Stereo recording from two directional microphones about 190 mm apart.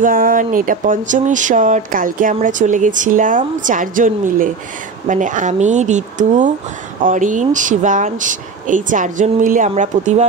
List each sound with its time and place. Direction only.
0.0 s speech: 45° right (ahead or behind)